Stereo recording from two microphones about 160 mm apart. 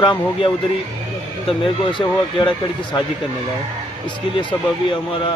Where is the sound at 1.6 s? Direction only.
30° left (ahead or behind).